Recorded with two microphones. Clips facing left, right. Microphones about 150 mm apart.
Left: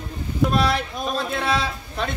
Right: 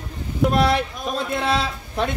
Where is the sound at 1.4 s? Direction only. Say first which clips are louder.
Right 1 dB; 15° right (ahead or behind).